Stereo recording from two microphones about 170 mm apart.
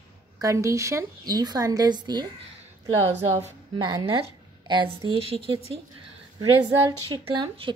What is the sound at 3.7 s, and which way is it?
A woman's voice, 25° right (ahead or behind).